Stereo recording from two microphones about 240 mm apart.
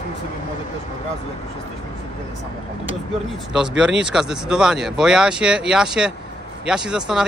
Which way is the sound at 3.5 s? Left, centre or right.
Centre.